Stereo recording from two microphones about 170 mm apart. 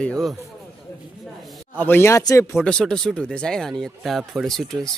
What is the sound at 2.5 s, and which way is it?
Speech, 5° left (ahead or behind).